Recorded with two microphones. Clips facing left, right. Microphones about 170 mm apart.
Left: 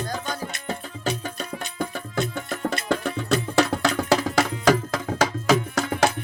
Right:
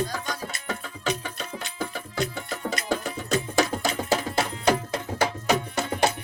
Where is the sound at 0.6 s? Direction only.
35° left (ahead or behind).